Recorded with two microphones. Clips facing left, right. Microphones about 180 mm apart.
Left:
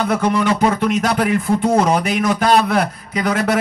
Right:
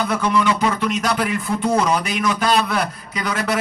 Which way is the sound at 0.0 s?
50° left (ahead or behind).